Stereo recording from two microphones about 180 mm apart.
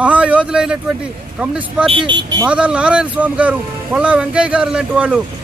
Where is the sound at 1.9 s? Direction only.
25° right (ahead or behind).